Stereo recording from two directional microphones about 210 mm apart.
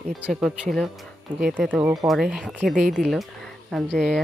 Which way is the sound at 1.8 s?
15° right (ahead or behind).